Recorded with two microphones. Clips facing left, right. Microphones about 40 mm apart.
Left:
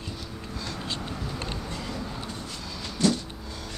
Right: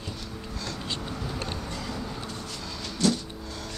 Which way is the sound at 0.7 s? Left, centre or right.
Centre.